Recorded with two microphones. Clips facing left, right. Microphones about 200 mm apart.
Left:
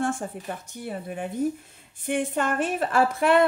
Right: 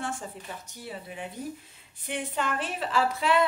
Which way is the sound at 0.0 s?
55° left (ahead or behind).